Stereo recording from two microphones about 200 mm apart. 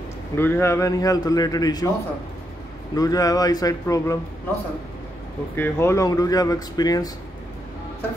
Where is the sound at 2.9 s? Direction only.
20° left (ahead or behind).